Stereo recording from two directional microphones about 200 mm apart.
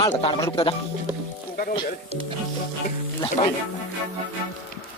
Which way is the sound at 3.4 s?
25° left (ahead or behind).